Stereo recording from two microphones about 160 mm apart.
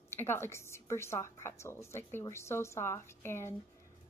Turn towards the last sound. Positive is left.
turn(degrees=15)  # may be behind; listen again after turning